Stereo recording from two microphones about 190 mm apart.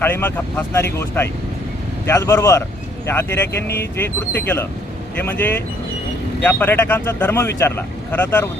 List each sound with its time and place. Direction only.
0.0 s speech: 10° left (ahead or behind)